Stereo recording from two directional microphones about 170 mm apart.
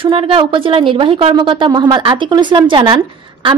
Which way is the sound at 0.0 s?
30° right (ahead or behind).